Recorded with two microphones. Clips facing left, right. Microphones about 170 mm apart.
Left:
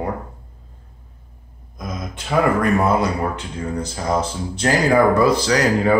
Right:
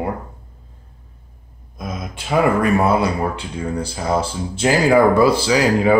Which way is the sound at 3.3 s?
30° right (ahead or behind).